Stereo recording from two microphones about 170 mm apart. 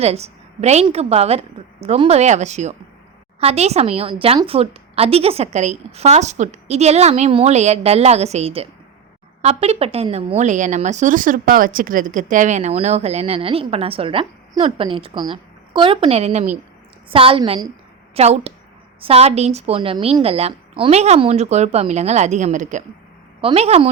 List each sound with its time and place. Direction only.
0.0 s a woman's voice: 40° right (ahead or behind)
23.4 s speech: 35° right (ahead or behind)